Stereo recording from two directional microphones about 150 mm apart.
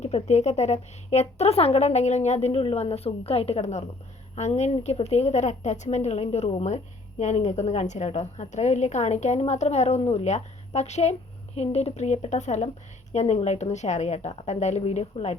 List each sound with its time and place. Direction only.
0.0 s a woman's voice: 50° left (ahead or behind)